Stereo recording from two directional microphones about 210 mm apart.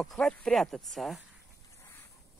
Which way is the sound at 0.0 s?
Centre (ahead or behind).